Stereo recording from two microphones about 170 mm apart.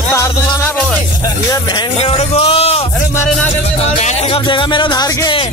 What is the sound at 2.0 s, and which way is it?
Music, 35° left (ahead or behind).